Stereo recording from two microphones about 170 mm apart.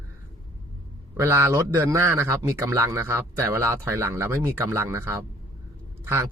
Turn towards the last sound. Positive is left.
turn(degrees=-15)  # may be behind; listen again after turning